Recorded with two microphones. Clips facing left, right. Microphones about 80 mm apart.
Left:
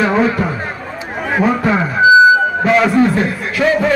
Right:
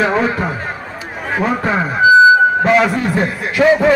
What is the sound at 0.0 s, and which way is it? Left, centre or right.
Speech, centre.